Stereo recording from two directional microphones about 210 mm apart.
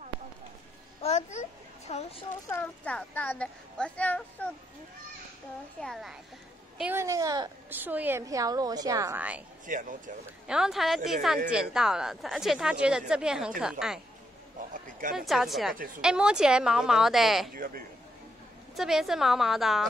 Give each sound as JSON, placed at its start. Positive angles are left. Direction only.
{"t": 1.0, "sound": "a sound", "side_deg": 35}
{"t": 2.5, "sound": "speech", "side_deg": 5}
{"t": 5.8, "sound": "a woman's voice", "side_deg": 0}
{"t": 6.8, "sound": "a woman's voice", "side_deg": -10}
{"t": 9.7, "sound": "speech", "side_deg": -40}
{"t": 10.4, "sound": "a woman's voice", "side_deg": -5}
{"t": 14.7, "sound": "a sound", "side_deg": -40}
{"t": 15.1, "sound": "a woman's voice", "side_deg": 0}
{"t": 18.8, "sound": "a woman's voice", "side_deg": 0}